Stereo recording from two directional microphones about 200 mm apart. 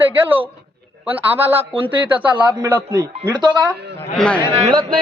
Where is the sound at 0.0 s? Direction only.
10° right (ahead or behind).